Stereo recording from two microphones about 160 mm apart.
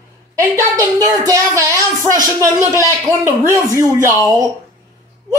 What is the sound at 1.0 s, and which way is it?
Speech, 20° right (ahead or behind).